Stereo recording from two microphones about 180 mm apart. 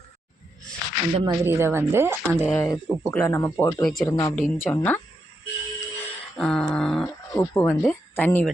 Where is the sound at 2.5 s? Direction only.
15° left (ahead or behind).